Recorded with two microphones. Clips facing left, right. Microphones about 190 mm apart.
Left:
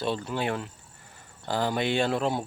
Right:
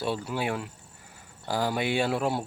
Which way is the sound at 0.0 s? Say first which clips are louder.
Left 1 dB; 10° right (ahead or behind).